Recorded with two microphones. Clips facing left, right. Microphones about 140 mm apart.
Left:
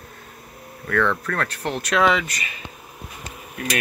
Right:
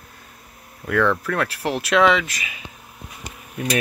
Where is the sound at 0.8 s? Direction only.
5° right (ahead or behind).